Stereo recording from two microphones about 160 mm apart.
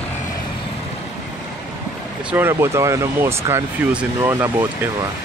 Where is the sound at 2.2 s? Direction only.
15° right (ahead or behind).